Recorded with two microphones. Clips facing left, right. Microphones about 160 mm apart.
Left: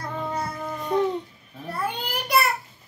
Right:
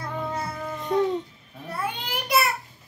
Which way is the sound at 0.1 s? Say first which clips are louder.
Left 1 dB; 5° right (ahead or behind).